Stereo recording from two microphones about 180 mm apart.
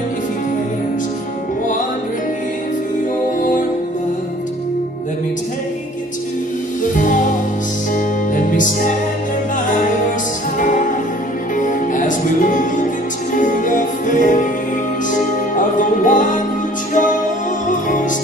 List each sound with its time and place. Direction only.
3.3 s music: 45° left (ahead or behind)
6.8 s music: 45° left (ahead or behind)
10.6 s music: 45° left (ahead or behind)